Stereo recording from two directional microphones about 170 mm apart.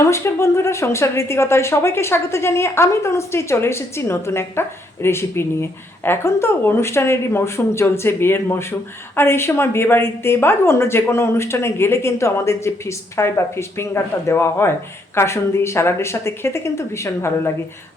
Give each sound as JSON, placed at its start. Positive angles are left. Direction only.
{"t": 0.0, "sound": "a woman's voice", "side_deg": 15}